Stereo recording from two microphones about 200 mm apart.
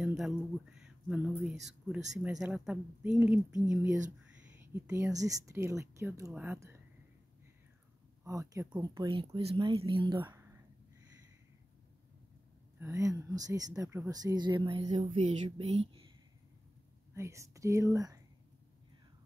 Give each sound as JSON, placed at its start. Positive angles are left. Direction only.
{"t": 0.0, "sound": "speech", "side_deg": 0}
{"t": 4.7, "sound": "speech", "side_deg": -15}
{"t": 8.2, "sound": "speech", "side_deg": -15}
{"t": 10.2, "sound": "whispering", "side_deg": -15}
{"t": 12.8, "sound": "speech", "side_deg": -15}
{"t": 14.9, "sound": "speech", "side_deg": -35}
{"t": 17.1, "sound": "speech", "side_deg": -15}